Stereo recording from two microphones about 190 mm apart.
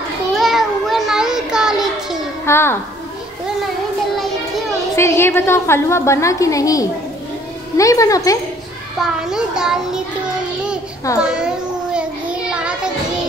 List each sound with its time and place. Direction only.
0.4 s child singing: centre (ahead or behind)
2.4 s a woman's voice: 15° left (ahead or behind)
4.9 s a woman's voice: 15° left (ahead or behind)
9.0 s a child's voice: 5° right (ahead or behind)
11.2 s child singing: 5° right (ahead or behind)